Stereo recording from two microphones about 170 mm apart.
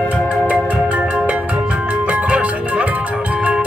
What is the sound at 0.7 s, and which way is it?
Music, 5° right (ahead or behind).